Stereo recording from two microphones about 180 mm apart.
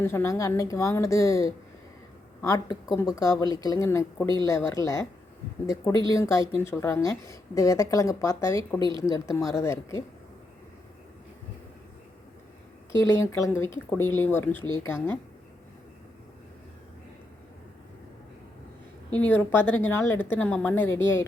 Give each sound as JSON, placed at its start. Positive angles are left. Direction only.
{"t": 0.0, "sound": "speech", "side_deg": 15}
{"t": 13.0, "sound": "speech", "side_deg": 15}
{"t": 19.1, "sound": "speech", "side_deg": 10}